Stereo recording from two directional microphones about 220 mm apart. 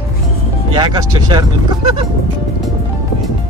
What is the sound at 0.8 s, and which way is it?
Music, 20° right (ahead or behind).